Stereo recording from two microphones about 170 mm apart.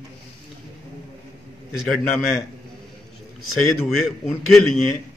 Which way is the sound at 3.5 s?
Centre (ahead or behind).